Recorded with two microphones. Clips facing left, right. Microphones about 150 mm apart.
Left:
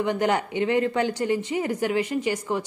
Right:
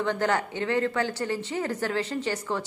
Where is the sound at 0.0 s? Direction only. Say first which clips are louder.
Left 3 dB; 15° left (ahead or behind).